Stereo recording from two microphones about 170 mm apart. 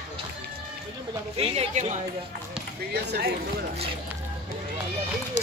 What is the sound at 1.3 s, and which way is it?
Speech, 35° right (ahead or behind).